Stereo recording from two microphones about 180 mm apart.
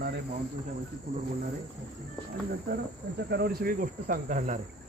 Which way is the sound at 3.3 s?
60° right (ahead or behind).